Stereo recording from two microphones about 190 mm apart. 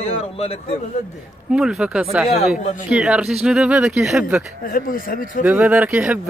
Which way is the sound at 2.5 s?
40° left (ahead or behind).